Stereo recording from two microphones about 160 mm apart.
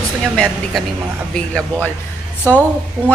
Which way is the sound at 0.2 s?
Centre (ahead or behind).